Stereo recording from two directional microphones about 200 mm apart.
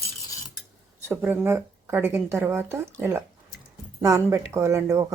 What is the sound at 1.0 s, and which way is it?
Speech, 10° right (ahead or behind).